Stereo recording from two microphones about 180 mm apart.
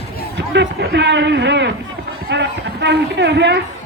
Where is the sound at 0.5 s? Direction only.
75° right (ahead or behind).